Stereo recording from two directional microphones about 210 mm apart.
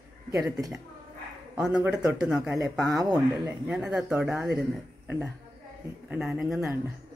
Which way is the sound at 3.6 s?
5° right (ahead or behind).